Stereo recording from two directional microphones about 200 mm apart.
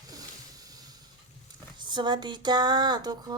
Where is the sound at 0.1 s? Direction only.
20° right (ahead or behind).